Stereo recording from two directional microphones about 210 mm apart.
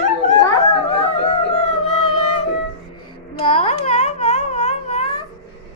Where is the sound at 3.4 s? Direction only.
30° left (ahead or behind).